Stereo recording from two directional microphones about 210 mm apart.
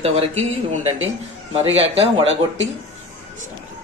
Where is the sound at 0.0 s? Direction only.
30° right (ahead or behind).